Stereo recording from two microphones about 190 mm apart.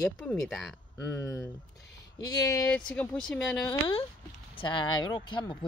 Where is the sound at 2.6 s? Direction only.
5° left (ahead or behind).